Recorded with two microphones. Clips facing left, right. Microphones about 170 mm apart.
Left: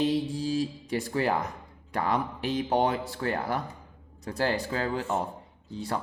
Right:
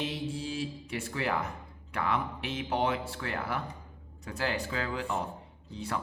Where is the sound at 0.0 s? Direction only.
35° left (ahead or behind).